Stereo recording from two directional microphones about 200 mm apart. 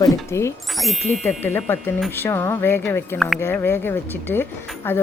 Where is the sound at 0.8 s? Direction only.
Centre (ahead or behind).